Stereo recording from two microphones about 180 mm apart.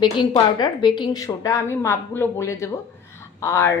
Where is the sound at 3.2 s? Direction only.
15° left (ahead or behind).